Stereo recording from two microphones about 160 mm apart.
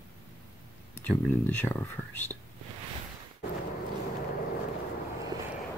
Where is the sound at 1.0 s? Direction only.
10° left (ahead or behind).